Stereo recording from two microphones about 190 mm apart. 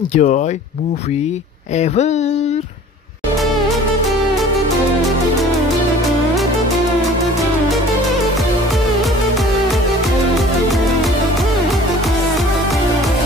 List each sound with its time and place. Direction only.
0.1 s speech: 40° left (ahead or behind)
1.8 s speech: 35° left (ahead or behind)